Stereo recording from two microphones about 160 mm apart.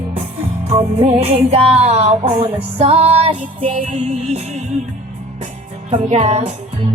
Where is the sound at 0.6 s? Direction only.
40° right (ahead or behind).